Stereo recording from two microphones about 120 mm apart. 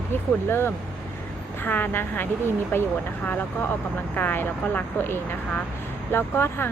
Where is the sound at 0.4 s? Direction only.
20° left (ahead or behind).